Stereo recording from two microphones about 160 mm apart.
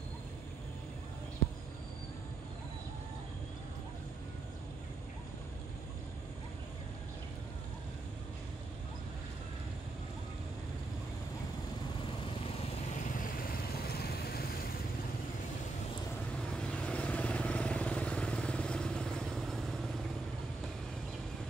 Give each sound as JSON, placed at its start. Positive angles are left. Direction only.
{"t": 13.2, "sound": "vehicle", "side_deg": 65}
{"t": 16.3, "sound": "vehicle", "side_deg": 5}